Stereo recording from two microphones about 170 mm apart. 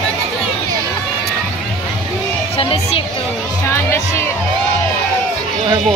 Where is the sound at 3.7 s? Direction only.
15° left (ahead or behind).